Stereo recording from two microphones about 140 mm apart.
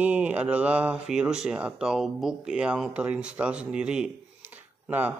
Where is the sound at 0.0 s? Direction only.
10° right (ahead or behind).